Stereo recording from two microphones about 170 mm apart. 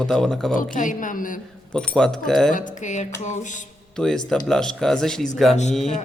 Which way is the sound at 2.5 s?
45° left (ahead or behind).